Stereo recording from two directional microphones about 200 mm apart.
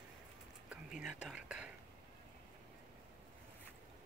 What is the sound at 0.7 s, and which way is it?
Speech, 5° right (ahead or behind).